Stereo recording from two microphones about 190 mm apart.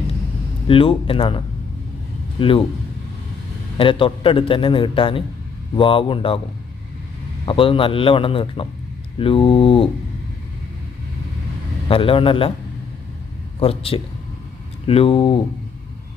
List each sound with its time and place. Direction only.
0.7 s a man's voice: 30° left (ahead or behind)
3.7 s a man's voice: 25° left (ahead or behind)
7.4 s a man's voice: 30° left (ahead or behind)
11.9 s a man's voice: 30° left (ahead or behind)
13.6 s a man's voice: 30° left (ahead or behind)